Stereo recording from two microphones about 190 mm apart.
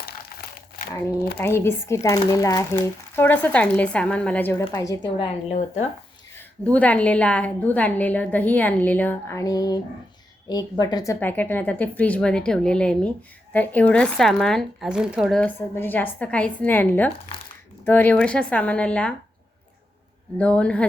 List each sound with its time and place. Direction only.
1.4 s speech: 10° left (ahead or behind)
5.5 s speech: 35° left (ahead or behind)
6.3 s speech: 5° left (ahead or behind)
20.4 s speech: 5° left (ahead or behind)